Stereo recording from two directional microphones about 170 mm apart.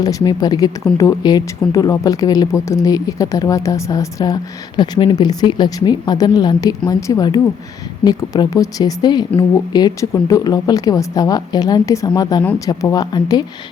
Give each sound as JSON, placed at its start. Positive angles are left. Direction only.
{"t": 0.0, "sound": "a woman's voice", "side_deg": 20}